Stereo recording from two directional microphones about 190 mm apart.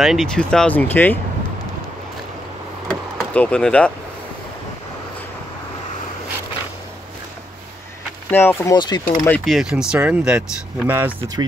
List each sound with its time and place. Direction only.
0.0 s speech: centre (ahead or behind)
2.9 s door: 5° left (ahead or behind)
8.3 s speech: 10° left (ahead or behind)
9.1 s speech: 10° left (ahead or behind)
9.4 s speech: centre (ahead or behind)